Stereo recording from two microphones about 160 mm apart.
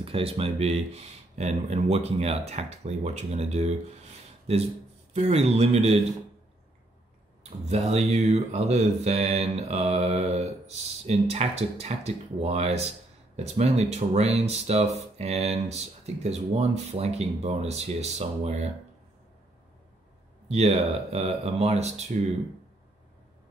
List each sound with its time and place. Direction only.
0.0 s speech: 35° right (ahead or behind)
7.4 s speech: 45° right (ahead or behind)
20.4 s speech: 40° right (ahead or behind)